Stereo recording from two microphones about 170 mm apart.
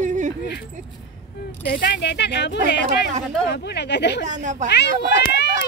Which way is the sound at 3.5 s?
80° left.